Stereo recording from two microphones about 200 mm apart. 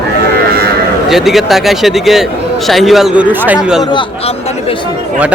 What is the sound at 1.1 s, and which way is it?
A man's voice, centre (ahead or behind).